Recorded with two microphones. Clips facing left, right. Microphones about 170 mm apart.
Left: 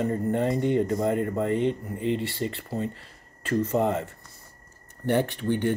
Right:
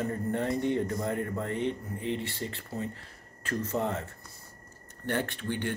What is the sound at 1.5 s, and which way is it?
Speech, 90° left.